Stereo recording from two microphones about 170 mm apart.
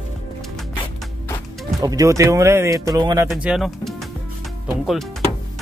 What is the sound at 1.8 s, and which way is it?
Speech, 20° right (ahead or behind).